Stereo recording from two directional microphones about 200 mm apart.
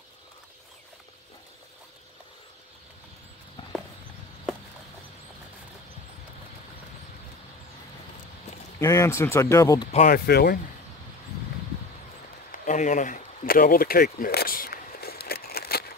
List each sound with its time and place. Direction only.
8.7 s speech: 15° left (ahead or behind)
9.9 s speech: 45° left (ahead or behind)
12.4 s a sound: 40° left (ahead or behind)